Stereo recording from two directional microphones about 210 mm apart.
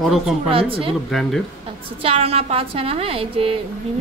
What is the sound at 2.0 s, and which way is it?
A woman's voice, 30° right (ahead or behind).